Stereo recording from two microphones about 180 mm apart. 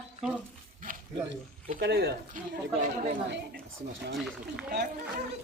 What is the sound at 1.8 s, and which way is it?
Speech, 65° right (ahead or behind).